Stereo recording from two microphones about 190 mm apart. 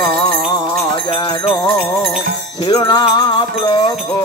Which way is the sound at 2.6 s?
20° left (ahead or behind).